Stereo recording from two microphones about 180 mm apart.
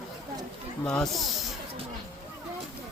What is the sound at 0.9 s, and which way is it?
Speech, centre (ahead or behind).